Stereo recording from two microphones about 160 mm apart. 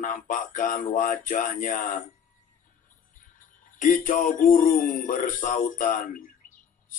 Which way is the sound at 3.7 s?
55° left (ahead or behind).